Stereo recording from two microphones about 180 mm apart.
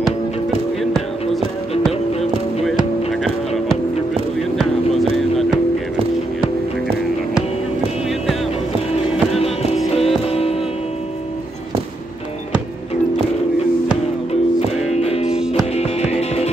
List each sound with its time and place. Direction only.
9.9 s music: 35° left (ahead or behind)
14.9 s music: 35° left (ahead or behind)